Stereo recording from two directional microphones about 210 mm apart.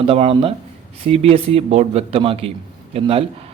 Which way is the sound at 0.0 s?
25° right (ahead or behind).